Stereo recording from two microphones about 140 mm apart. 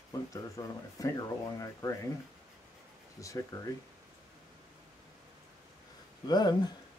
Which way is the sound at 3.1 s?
25° left (ahead or behind).